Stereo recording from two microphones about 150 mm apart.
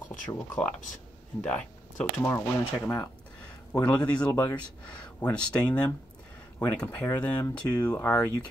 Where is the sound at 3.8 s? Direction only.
10° left (ahead or behind).